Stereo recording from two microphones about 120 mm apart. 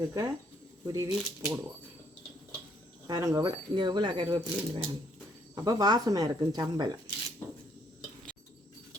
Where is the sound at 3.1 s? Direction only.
30° right (ahead or behind).